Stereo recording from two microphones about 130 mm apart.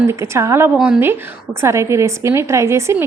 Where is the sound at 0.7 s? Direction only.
5° right (ahead or behind).